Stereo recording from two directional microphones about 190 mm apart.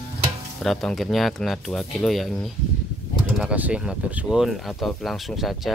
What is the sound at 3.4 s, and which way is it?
Speech, 5° right (ahead or behind).